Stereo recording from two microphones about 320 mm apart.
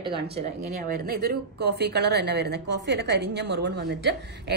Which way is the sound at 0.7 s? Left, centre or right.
Right.